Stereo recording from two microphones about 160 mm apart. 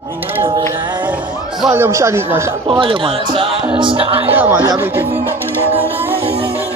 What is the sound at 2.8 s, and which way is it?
Music, 30° right (ahead or behind).